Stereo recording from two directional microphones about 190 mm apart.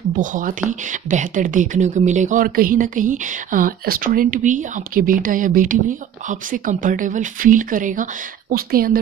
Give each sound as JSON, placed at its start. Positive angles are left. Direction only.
{"t": 0.2, "sound": "speech", "side_deg": -45}